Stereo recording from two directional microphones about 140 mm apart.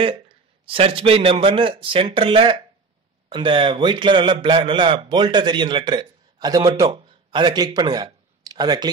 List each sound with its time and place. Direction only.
0.7 s a man's voice: 40° right (ahead or behind)